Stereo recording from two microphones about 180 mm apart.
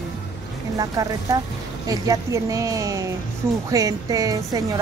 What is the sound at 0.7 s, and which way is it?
A woman's voice, 20° right (ahead or behind).